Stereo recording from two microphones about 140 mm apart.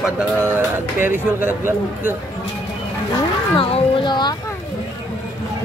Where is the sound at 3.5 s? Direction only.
40° left (ahead or behind).